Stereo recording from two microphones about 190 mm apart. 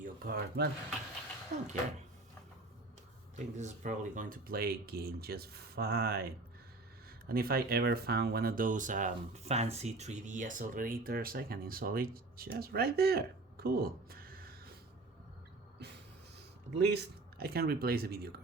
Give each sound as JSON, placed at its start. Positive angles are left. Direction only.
{"t": 0.0, "sound": "speech", "side_deg": -55}
{"t": 3.3, "sound": "speech", "side_deg": -40}
{"t": 7.3, "sound": "speech", "side_deg": -50}
{"t": 15.8, "sound": "music", "side_deg": -60}
{"t": 16.7, "sound": "speech", "side_deg": -60}